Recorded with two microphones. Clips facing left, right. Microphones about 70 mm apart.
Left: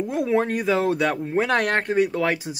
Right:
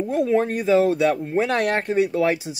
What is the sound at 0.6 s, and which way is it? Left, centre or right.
Speech, left.